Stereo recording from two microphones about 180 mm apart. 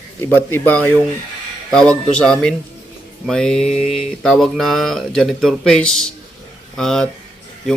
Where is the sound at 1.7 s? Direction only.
5° left (ahead or behind).